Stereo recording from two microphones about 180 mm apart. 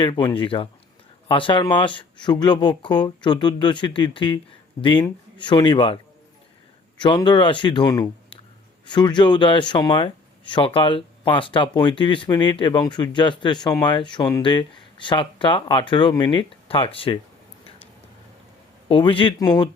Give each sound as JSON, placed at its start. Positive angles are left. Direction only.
{"t": 0.0, "sound": "speech", "side_deg": 25}
{"t": 7.0, "sound": "speech", "side_deg": 25}
{"t": 18.9, "sound": "speech", "side_deg": 30}